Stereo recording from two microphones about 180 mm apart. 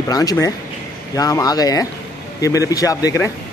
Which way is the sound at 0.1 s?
20° left (ahead or behind).